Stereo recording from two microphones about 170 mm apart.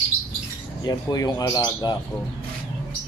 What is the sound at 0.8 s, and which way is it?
Speech, 25° left (ahead or behind).